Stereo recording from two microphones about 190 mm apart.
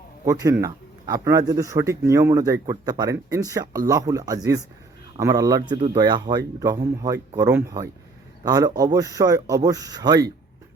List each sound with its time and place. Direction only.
0.3 s speech: 15° right (ahead or behind)